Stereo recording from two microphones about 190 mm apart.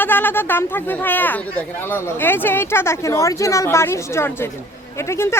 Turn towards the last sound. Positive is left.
turn(degrees=15)  # may be behind; listen again after turning